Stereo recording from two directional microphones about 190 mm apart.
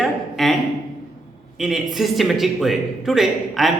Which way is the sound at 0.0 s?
Centre (ahead or behind).